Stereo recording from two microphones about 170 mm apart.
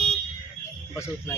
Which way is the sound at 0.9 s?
15° left (ahead or behind).